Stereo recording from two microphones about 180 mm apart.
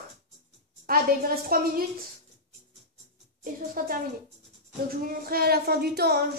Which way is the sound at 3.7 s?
55° right (ahead or behind).